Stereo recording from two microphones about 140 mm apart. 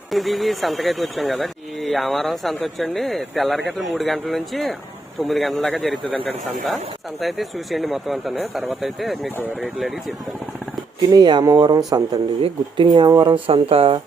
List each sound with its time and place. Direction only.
0.1 s speech: centre (ahead or behind)
7.2 s speech: centre (ahead or behind)
11.1 s speech: 30° right (ahead or behind)
12.4 s speech: 35° right (ahead or behind)